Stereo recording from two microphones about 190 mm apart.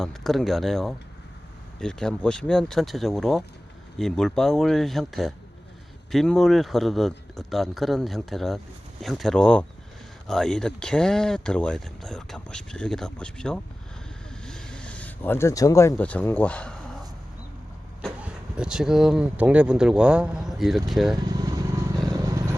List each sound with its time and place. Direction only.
0.0 s a man's voice: centre (ahead or behind)
18.0 s speech: 5° right (ahead or behind)
21.2 s vehicle: 20° right (ahead or behind)